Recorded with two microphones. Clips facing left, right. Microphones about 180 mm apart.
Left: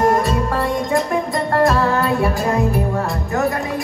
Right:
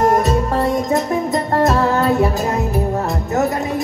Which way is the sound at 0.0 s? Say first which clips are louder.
Right 1 dB; 20° right (ahead or behind).